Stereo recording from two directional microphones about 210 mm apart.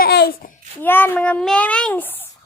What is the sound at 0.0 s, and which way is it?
Babbling, 50° left (ahead or behind).